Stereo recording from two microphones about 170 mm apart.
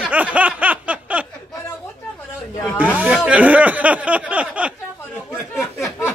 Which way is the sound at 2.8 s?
5° right (ahead or behind).